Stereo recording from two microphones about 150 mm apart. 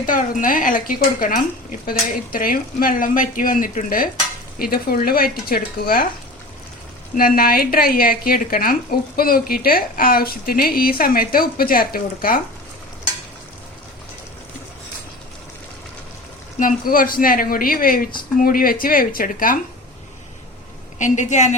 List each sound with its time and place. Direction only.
0.0 s speech: 65° left (ahead or behind)
4.6 s speech: 85° left
7.2 s speech: 75° left (ahead or behind)
16.6 s speech: 65° left (ahead or behind)
21.0 s a woman's voice: 55° left (ahead or behind)